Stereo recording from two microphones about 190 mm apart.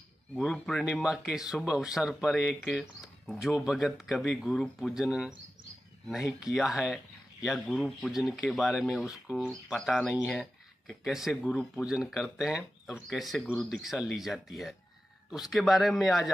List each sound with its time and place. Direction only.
0.4 s speech: centre (ahead or behind)